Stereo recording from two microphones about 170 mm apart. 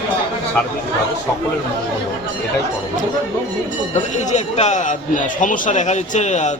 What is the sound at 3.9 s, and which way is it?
A man's voice, 45° left (ahead or behind).